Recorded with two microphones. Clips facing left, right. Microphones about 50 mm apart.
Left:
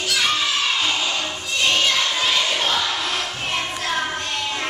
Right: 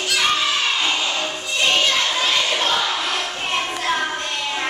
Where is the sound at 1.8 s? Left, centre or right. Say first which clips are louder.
Right 1 dB; centre.